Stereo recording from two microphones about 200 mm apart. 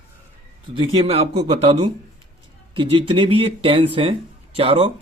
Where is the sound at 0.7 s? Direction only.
30° right (ahead or behind).